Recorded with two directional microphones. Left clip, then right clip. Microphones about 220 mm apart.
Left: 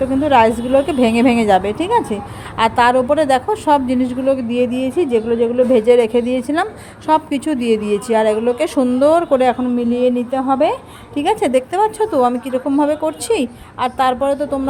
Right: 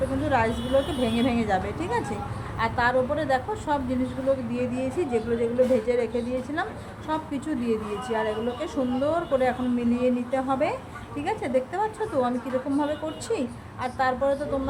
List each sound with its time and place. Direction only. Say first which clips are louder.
0.3 s a woman's voice: left 13 dB; 40° left (ahead or behind)